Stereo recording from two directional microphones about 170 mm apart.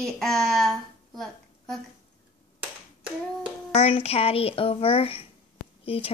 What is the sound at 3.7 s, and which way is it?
Speech, 35° left (ahead or behind).